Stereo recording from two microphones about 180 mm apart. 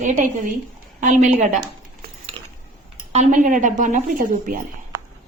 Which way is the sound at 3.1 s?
45° right (ahead or behind).